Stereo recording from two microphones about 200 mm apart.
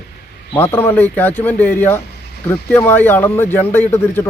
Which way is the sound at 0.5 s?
10° left (ahead or behind).